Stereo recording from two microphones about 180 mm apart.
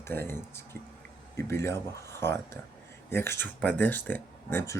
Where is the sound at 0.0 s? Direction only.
10° left (ahead or behind).